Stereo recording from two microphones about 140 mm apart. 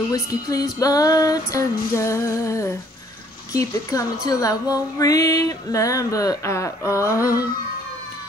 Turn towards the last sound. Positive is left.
turn(degrees=25)  # may be behind; listen again after turning